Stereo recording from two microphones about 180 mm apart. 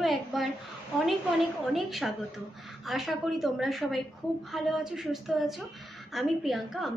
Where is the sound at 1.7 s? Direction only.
Centre (ahead or behind).